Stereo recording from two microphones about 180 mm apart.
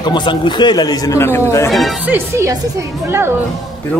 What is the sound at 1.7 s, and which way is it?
Speech, centre (ahead or behind).